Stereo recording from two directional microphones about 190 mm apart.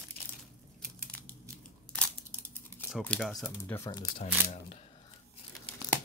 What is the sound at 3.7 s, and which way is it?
Speech, 15° left (ahead or behind).